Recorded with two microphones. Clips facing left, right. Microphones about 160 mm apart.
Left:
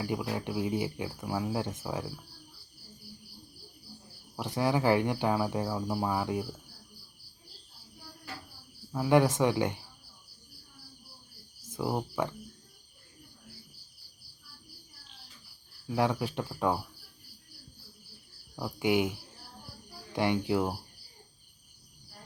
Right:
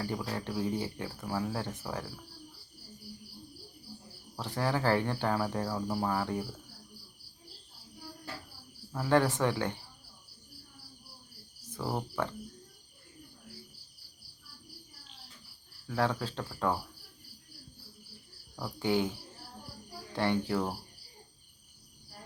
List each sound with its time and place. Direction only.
0.0 s speech: 15° left (ahead or behind)
4.4 s speech: 15° left (ahead or behind)
8.9 s speech: 10° left (ahead or behind)
11.7 s speech: 15° left (ahead or behind)
15.9 s speech: 15° left (ahead or behind)
18.5 s speech: 15° left (ahead or behind)
20.1 s speech: 15° left (ahead or behind)